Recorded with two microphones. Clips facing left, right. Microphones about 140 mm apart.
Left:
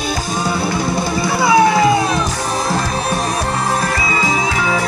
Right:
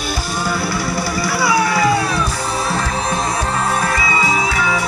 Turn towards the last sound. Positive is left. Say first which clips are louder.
# left 1 dB
turn(degrees=45)  # may be behind; listen again after turning